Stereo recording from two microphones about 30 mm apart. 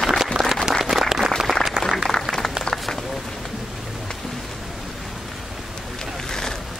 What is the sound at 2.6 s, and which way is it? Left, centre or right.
Run, left.